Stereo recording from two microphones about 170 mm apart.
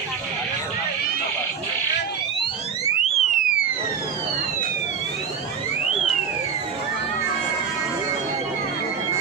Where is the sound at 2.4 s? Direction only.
40° left (ahead or behind).